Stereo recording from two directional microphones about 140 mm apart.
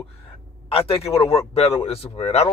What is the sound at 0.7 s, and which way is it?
Speech, 45° left (ahead or behind).